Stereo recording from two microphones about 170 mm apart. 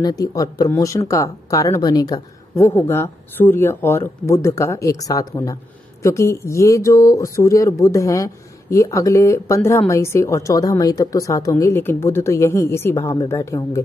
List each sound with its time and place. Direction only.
0.0 s speech: 20° left (ahead or behind)